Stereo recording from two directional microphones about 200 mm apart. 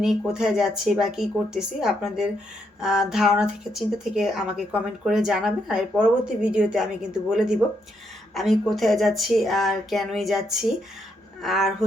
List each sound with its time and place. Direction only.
0.0 s a woman's voice: centre (ahead or behind)